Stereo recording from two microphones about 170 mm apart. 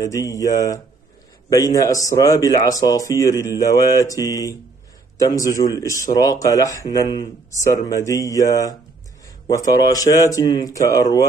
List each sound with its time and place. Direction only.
0.0 s a man's voice: 20° left (ahead or behind)